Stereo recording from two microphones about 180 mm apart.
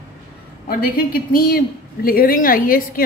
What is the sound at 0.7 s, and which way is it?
A woman's voice, 55° left (ahead or behind).